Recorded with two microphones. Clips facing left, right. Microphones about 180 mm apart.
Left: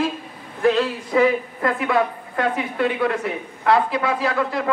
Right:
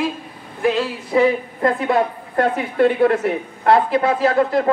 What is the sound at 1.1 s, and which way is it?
Speech, 30° right (ahead or behind).